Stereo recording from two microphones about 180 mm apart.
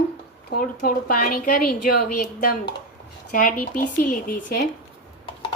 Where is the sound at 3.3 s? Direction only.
45° left (ahead or behind).